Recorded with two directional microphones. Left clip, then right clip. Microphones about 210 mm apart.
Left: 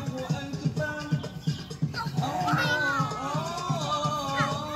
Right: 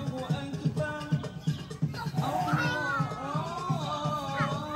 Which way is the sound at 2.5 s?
45° left (ahead or behind).